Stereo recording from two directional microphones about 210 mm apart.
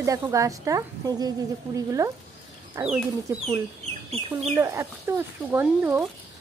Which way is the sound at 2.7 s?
5° right (ahead or behind).